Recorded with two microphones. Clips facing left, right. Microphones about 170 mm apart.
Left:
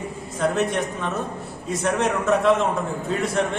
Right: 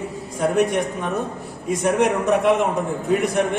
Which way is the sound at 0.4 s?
10° right (ahead or behind).